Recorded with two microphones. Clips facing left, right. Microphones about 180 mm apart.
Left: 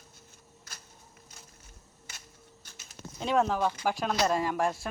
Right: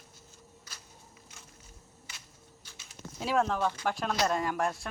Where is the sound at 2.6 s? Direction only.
45° left (ahead or behind).